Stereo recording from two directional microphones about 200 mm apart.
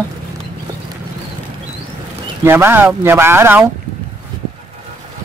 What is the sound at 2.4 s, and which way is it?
Speech, 10° right (ahead or behind).